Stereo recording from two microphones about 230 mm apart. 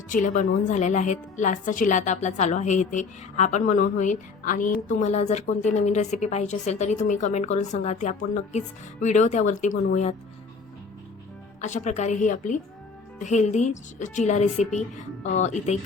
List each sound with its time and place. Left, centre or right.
0.1 s a woman's voice: left
11.6 s a woman's voice: left